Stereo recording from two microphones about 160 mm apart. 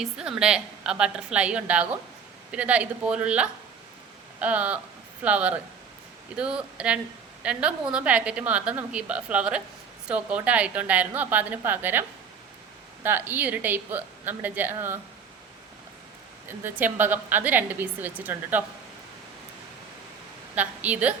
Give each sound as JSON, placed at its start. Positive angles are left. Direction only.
{"t": 0.0, "sound": "a woman's voice", "side_deg": -5}
{"t": 16.6, "sound": "a woman's voice", "side_deg": -10}
{"t": 20.6, "sound": "a woman's voice", "side_deg": -10}